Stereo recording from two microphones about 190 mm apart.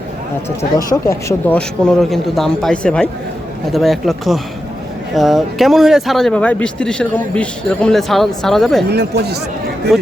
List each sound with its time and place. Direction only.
0.9 s speech: 15° left (ahead or behind)
8.9 s speech: 60° right (ahead or behind)
9.9 s speech: centre (ahead or behind)